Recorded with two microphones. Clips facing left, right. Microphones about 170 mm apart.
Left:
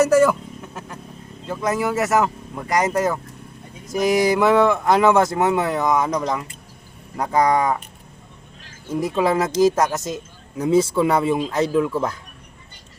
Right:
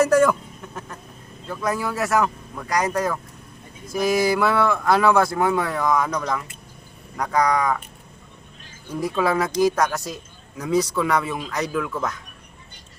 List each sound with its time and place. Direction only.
0.0 s a sound: 5° left (ahead or behind)
1.5 s speech: 20° left (ahead or behind)
8.9 s speech: 20° left (ahead or behind)